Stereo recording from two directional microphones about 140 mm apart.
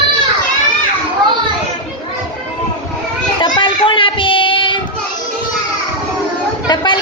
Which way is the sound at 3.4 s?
35° left (ahead or behind).